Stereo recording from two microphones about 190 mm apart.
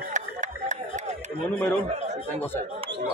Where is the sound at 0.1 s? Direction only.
40° right (ahead or behind).